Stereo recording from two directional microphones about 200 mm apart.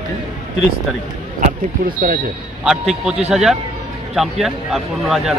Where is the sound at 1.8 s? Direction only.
45° right (ahead or behind).